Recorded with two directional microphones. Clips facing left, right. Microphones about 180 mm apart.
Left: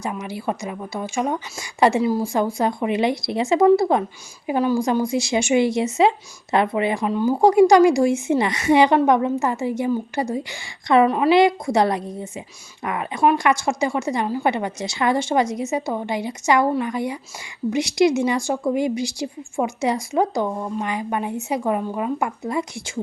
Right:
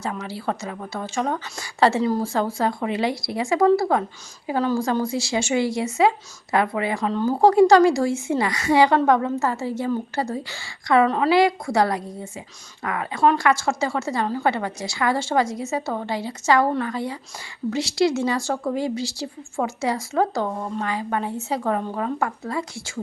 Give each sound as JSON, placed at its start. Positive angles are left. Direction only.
{"t": 0.0, "sound": "a woman's voice", "side_deg": 15}